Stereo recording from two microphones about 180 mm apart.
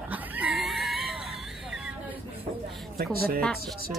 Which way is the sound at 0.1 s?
10° right (ahead or behind).